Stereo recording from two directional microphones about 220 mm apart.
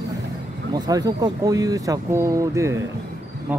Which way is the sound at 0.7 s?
15° right (ahead or behind).